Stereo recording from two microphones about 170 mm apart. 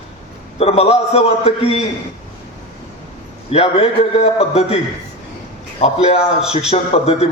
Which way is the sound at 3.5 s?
35° left (ahead or behind).